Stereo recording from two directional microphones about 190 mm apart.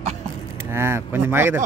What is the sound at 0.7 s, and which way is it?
Speech, 15° right (ahead or behind).